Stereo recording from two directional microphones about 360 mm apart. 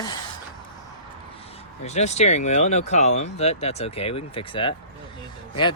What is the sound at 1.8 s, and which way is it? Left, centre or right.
Speech, centre.